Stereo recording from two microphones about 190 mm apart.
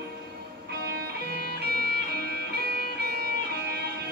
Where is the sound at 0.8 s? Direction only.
55° right (ahead or behind).